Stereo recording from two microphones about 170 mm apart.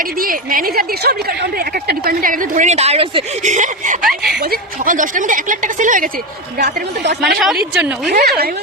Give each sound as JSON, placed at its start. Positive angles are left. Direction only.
{"t": 0.2, "sound": "a woman's voice", "side_deg": -55}
{"t": 4.0, "sound": "speech", "side_deg": 0}
{"t": 4.5, "sound": "a woman's voice", "side_deg": -50}
{"t": 7.2, "sound": "speech", "side_deg": 0}
{"t": 8.1, "sound": "a woman's voice", "side_deg": -65}